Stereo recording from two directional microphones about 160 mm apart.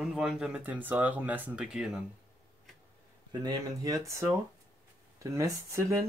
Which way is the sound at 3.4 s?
25° right (ahead or behind).